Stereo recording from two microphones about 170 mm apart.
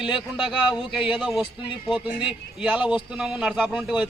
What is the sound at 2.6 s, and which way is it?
Speech, 5° right (ahead or behind).